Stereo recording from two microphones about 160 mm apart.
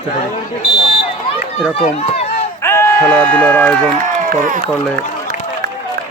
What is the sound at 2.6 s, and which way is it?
Speech, 15° left (ahead or behind).